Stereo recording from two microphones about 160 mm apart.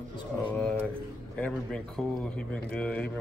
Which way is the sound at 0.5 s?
10° left (ahead or behind).